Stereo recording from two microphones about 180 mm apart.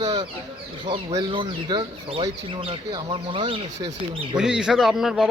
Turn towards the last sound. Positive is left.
turn(degrees=0)  # may be behind; listen again after turning